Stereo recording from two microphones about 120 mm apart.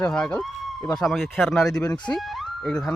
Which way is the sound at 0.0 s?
10° left (ahead or behind).